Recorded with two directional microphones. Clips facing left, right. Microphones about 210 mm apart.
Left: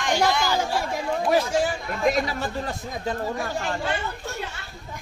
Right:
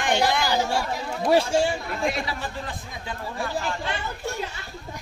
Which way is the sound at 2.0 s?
45° left (ahead or behind).